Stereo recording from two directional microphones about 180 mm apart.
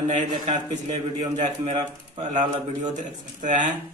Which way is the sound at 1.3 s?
35° right (ahead or behind).